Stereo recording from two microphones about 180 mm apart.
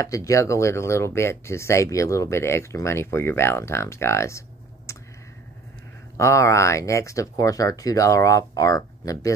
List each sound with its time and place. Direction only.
0.0 s speech: 15° left (ahead or behind)
6.1 s speech: 15° left (ahead or behind)